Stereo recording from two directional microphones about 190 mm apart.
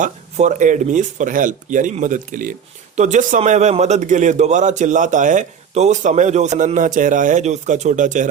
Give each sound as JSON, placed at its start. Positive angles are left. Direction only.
{"t": 0.0, "sound": "speech", "side_deg": -40}